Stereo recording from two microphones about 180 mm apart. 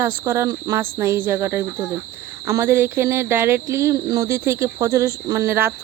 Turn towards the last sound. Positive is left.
turn(degrees=-10)  # may be behind; listen again after turning